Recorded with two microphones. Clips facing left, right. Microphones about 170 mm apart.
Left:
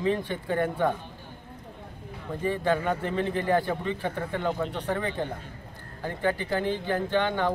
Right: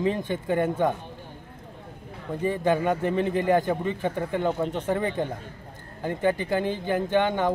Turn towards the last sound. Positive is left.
turn(degrees=-20)  # may be behind; listen again after turning